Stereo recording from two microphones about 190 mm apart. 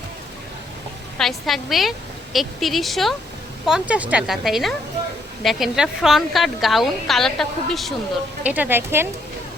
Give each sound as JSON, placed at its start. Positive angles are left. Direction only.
{"t": 1.2, "sound": "a woman's voice", "side_deg": 0}